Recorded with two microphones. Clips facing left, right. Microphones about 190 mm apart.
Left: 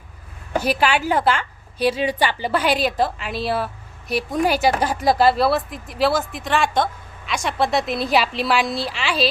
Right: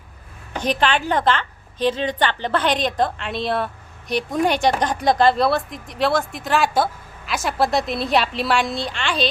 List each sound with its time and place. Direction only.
0.6 s a woman's voice: 10° left (ahead or behind)